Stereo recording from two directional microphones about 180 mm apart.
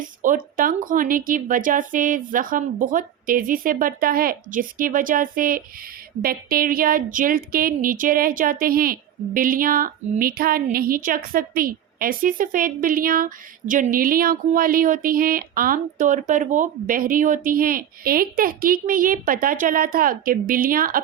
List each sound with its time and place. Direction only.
0.2 s speech: 50° right (ahead or behind)